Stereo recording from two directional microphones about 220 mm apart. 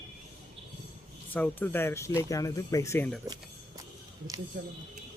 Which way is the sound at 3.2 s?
15° right (ahead or behind).